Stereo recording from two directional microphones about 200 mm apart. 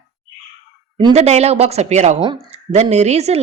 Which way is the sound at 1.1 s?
35° right (ahead or behind).